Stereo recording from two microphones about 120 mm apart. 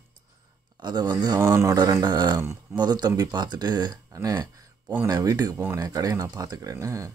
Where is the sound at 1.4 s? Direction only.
20° right (ahead or behind).